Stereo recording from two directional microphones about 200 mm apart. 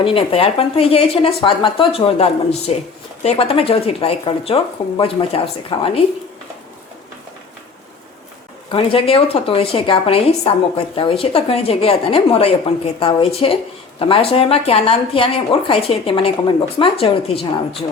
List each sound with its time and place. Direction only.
0.0 s a woman's voice: 25° left (ahead or behind)
8.7 s a woman's voice: 25° left (ahead or behind)